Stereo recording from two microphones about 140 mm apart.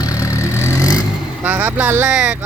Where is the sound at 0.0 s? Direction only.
25° left (ahead or behind).